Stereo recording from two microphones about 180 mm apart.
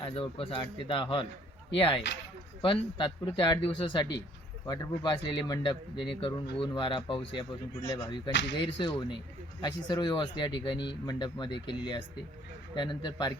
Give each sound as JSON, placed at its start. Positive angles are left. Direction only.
{"t": 0.0, "sound": "speech", "side_deg": 30}